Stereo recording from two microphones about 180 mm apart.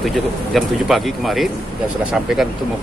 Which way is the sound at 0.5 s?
Centre (ahead or behind).